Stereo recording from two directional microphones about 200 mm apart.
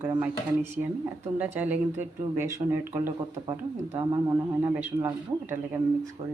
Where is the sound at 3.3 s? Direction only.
35° right (ahead or behind).